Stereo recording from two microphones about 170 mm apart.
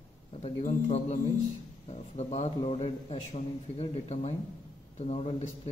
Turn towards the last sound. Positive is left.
turn(degrees=40)  # may be behind; listen again after turning